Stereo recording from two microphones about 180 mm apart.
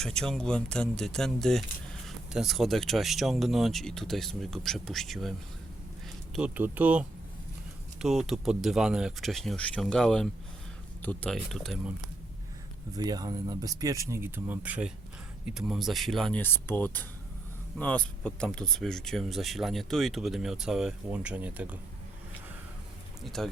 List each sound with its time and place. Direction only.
0.0 s speech: 5° left (ahead or behind)
12.9 s speech: 20° right (ahead or behind)
23.2 s speech: centre (ahead or behind)